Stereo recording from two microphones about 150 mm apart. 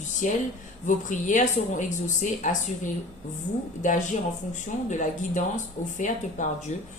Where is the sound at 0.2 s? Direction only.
55° left (ahead or behind).